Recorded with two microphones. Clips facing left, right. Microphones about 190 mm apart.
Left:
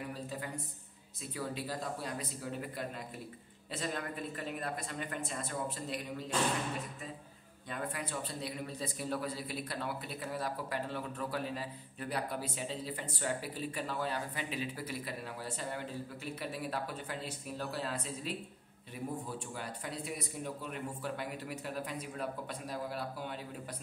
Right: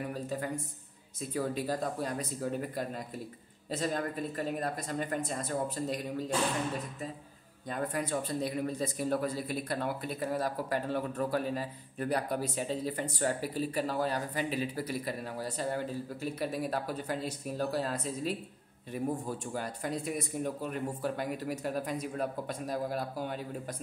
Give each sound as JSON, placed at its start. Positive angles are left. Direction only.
{"t": 0.1, "sound": "a sound", "side_deg": -45}
{"t": 1.3, "sound": "a man's voice", "side_deg": -45}
{"t": 7.7, "sound": "a man's voice", "side_deg": -40}